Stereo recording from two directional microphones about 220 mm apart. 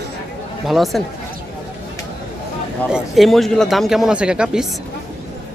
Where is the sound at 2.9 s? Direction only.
Centre (ahead or behind).